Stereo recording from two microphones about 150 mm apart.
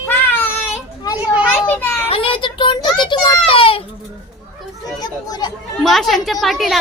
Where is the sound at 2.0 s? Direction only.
40° left (ahead or behind).